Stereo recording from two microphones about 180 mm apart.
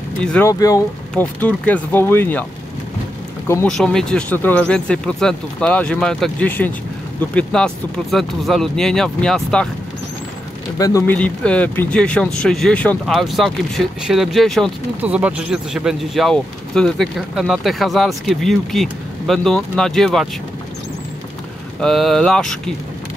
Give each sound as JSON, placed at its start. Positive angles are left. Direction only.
{"t": 0.2, "sound": "speech", "side_deg": 5}
{"t": 0.5, "sound": "speech", "side_deg": 20}
{"t": 3.6, "sound": "speech", "side_deg": 5}
{"t": 10.8, "sound": "speech", "side_deg": 20}
{"t": 21.7, "sound": "speech", "side_deg": 0}